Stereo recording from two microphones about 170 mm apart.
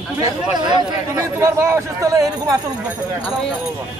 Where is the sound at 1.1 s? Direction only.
15° right (ahead or behind).